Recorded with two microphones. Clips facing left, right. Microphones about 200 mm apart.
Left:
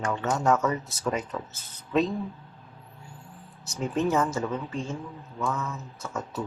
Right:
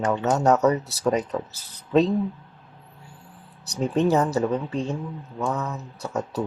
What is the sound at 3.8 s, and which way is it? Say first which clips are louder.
Speech: right 4 dB; 35° right (ahead or behind).